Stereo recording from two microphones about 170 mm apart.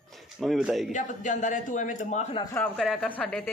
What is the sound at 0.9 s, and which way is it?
A man's voice, 45° left (ahead or behind).